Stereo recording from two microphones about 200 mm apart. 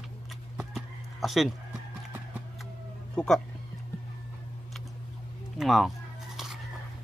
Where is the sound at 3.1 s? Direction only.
Centre (ahead or behind).